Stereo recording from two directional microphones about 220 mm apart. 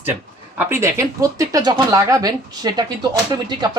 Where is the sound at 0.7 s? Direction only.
15° right (ahead or behind).